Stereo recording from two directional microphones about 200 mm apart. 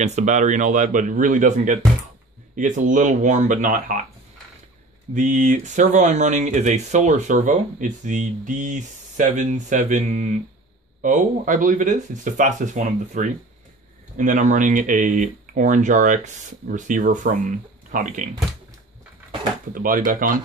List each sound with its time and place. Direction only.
0.0 s speech: 35° right (ahead or behind)
5.1 s speech: 40° right (ahead or behind)
19.7 s speech: 45° right (ahead or behind)